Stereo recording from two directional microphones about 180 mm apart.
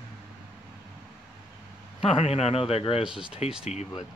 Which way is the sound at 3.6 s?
40° left (ahead or behind).